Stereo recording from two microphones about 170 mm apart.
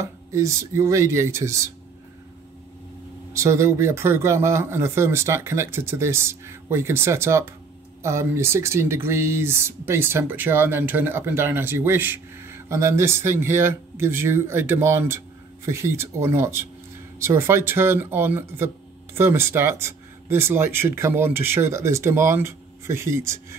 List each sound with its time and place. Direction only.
0.0 s speech: 20° right (ahead or behind)
3.3 s speech: 15° right (ahead or behind)